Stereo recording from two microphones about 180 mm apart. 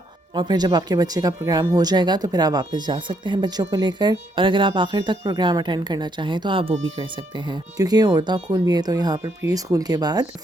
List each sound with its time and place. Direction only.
0.3 s speech: 25° right (ahead or behind)